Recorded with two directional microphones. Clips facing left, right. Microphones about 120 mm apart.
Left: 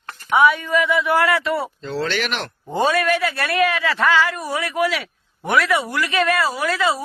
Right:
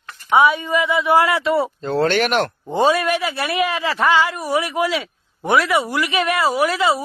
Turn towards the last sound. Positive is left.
turn(degrees=-25)  # may be behind; listen again after turning